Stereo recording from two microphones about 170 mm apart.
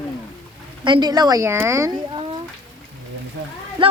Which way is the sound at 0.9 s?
25° right (ahead or behind).